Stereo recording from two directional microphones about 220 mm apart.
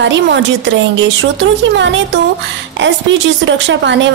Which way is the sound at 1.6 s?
55° right (ahead or behind).